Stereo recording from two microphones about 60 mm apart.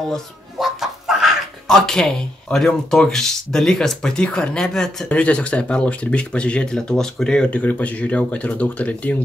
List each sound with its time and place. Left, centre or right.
0.1 s chicken: centre
1.7 s speech: centre
5.1 s speech: left
7.5 s speech: left